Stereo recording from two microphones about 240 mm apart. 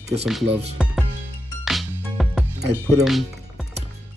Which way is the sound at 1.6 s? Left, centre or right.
Centre.